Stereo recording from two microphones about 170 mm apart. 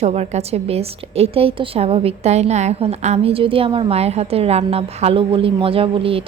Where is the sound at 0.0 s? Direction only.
40° right (ahead or behind).